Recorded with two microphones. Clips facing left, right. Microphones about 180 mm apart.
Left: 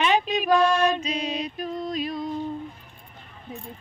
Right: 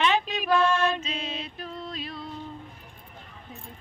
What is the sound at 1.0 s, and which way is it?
Music, 15° left (ahead or behind).